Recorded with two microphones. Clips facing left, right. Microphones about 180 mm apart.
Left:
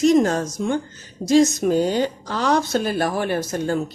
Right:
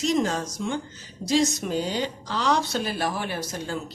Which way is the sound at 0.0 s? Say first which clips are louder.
Left 8 dB; 50° left (ahead or behind).